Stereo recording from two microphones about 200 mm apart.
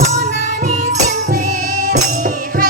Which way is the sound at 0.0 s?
35° right (ahead or behind).